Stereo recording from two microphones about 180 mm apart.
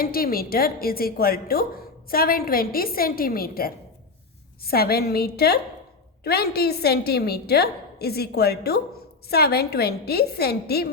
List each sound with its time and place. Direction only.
0.0 s a woman's voice: 55° left (ahead or behind)